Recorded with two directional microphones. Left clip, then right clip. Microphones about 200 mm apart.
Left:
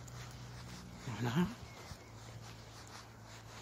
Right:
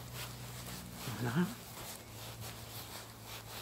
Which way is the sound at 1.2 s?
20° left (ahead or behind).